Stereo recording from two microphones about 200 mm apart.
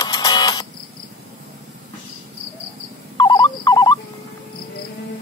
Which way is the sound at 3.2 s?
20° left (ahead or behind).